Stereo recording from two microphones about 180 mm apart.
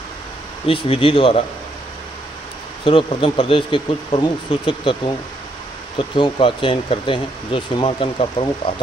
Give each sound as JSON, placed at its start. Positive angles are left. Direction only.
{"t": 0.7, "sound": "speech", "side_deg": 30}
{"t": 2.8, "sound": "speech", "side_deg": 30}